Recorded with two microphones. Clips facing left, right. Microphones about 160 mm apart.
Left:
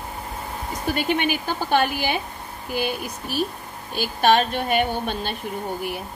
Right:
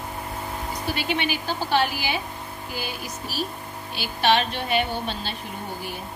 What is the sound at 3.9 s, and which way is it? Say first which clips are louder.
A woman's voice: left 3 dB; 50° left (ahead or behind).